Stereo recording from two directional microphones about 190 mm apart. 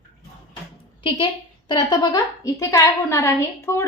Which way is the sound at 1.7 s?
20° left (ahead or behind).